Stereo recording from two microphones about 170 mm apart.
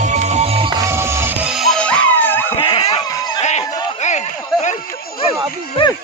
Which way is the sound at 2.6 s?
30° left (ahead or behind).